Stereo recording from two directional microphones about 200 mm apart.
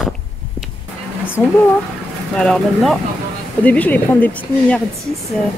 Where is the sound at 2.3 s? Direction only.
5° left (ahead or behind).